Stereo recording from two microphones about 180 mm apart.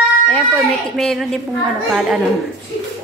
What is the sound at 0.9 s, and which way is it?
Speech, 5° left (ahead or behind).